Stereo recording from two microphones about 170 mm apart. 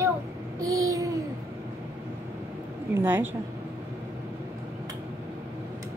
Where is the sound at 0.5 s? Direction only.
20° right (ahead or behind).